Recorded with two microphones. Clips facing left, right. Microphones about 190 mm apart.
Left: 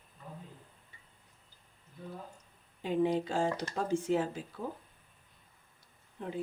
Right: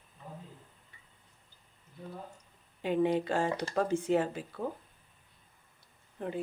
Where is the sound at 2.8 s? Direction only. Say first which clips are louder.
Right 1 dB; 65° right (ahead or behind).